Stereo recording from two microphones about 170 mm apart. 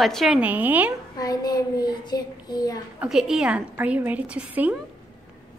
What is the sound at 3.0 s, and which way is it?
A woman's voice, 5° right (ahead or behind).